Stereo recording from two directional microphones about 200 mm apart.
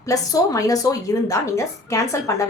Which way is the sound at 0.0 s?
15° left (ahead or behind).